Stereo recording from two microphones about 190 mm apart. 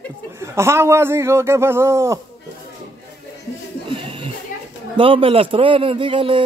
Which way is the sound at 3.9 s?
25° right (ahead or behind).